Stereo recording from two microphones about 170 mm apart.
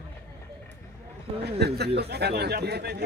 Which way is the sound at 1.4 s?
75° right (ahead or behind).